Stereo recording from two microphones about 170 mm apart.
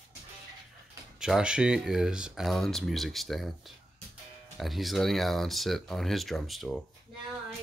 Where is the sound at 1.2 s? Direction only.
5° right (ahead or behind).